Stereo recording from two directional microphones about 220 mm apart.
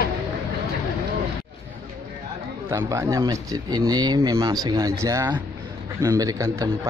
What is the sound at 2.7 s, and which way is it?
A man's voice, 10° right (ahead or behind).